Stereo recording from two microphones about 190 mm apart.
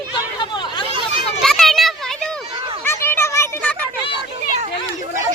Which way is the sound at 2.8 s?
10° left (ahead or behind).